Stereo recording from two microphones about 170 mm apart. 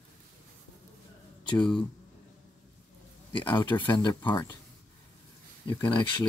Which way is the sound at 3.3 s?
25° left (ahead or behind).